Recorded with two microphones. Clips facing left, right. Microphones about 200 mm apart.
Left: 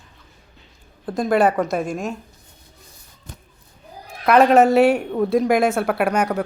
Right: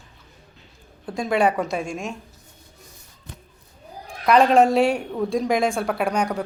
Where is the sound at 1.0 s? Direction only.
Centre (ahead or behind).